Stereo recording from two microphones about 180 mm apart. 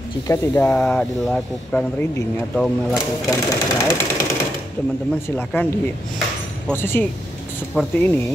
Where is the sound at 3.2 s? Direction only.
20° left (ahead or behind).